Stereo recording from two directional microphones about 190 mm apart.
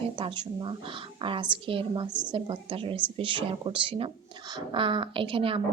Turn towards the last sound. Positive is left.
turn(degrees=-30)  # may be behind; listen again after turning